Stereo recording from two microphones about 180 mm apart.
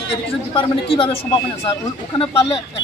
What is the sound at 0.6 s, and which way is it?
Speech, 30° left (ahead or behind).